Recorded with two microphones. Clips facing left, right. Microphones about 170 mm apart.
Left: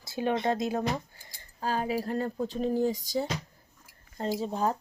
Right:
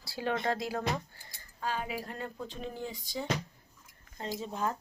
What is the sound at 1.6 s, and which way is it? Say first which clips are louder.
Speech: left 6 dB; 40° left (ahead or behind).